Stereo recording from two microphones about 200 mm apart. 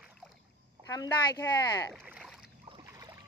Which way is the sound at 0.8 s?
15° left (ahead or behind).